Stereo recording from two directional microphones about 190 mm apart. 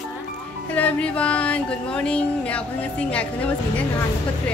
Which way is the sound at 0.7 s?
10° left (ahead or behind).